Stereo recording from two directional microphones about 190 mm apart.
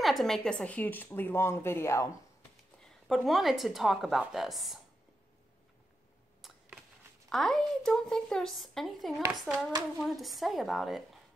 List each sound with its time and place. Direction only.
0.0 s a woman's voice: centre (ahead or behind)
2.8 s a woman's voice: centre (ahead or behind)
6.4 s a sound: centre (ahead or behind)
7.2 s a woman's voice: centre (ahead or behind)